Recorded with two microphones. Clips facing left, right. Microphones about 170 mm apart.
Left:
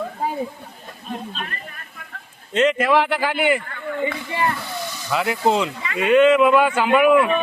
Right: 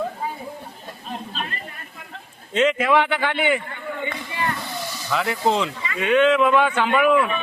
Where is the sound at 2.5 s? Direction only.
Centre (ahead or behind).